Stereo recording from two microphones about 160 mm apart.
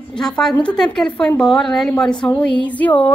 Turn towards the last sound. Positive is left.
turn(degrees=10)  # may be behind; listen again after turning